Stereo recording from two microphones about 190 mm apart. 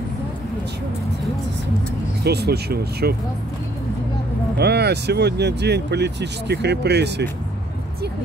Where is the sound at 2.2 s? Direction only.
60° right (ahead or behind).